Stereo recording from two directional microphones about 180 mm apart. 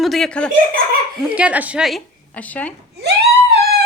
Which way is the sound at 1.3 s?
5° right (ahead or behind).